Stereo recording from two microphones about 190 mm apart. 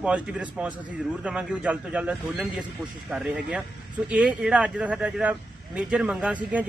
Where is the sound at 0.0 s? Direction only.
5° right (ahead or behind).